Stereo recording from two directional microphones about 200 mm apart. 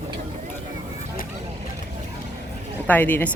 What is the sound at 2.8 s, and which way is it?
Speech, 10° left (ahead or behind).